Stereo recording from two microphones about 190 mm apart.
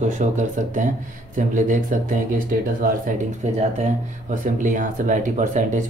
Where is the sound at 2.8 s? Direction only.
50° right (ahead or behind).